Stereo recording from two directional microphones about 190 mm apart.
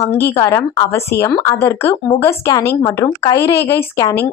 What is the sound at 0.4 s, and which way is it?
A woman's voice, 15° left (ahead or behind).